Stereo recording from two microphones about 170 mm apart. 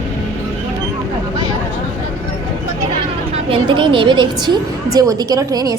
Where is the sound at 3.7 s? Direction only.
30° right (ahead or behind).